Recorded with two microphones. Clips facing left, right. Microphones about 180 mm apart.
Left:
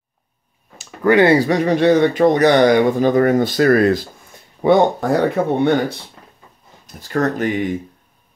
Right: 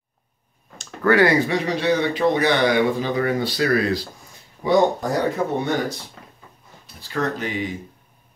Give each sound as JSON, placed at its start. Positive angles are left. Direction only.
{"t": 1.0, "sound": "speech", "side_deg": 25}
{"t": 1.5, "sound": "speech", "side_deg": 50}
{"t": 4.6, "sound": "speech", "side_deg": 60}
{"t": 6.9, "sound": "speech", "side_deg": 45}